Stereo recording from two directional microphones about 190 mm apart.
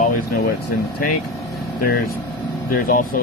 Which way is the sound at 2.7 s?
50° left (ahead or behind).